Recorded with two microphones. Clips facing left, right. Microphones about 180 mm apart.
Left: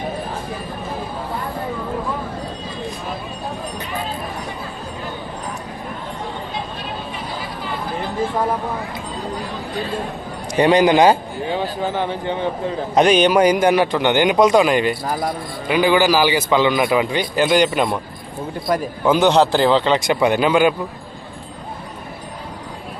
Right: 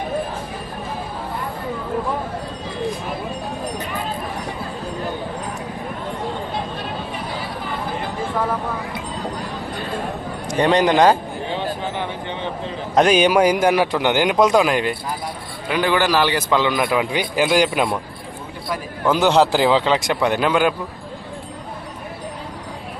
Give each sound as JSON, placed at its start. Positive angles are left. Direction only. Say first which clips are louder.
{"t": 10.5, "sound": "a man's voice", "louder": "left 3 dB", "side_deg": 10}
{"t": 13.0, "sound": "a man's voice", "louder": "left 1 dB", "side_deg": -5}
{"t": 18.7, "sound": "a man's voice", "louder": "left 7 dB", "side_deg": 45}
{"t": 19.0, "sound": "a man's voice", "louder": "left 1 dB", "side_deg": 0}